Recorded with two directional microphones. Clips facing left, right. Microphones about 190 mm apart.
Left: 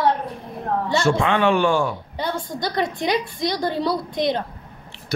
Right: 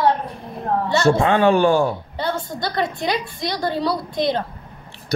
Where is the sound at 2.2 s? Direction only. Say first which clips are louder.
Left 1 dB; 15° left (ahead or behind).